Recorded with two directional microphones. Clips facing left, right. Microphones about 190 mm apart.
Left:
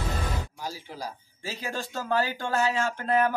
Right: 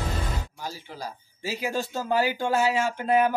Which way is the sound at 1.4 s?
10° right (ahead or behind).